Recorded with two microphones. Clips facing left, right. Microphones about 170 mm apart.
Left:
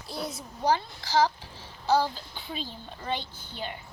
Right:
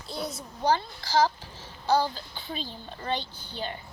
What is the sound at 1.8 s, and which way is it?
Speech, 5° left (ahead or behind).